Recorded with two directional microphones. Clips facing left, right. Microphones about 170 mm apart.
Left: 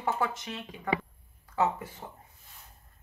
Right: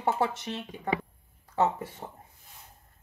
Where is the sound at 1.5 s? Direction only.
30° right (ahead or behind).